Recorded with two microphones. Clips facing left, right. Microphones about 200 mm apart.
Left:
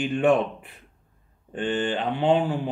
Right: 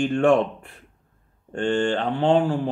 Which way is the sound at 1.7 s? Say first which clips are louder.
Right 3 dB; 15° left (ahead or behind).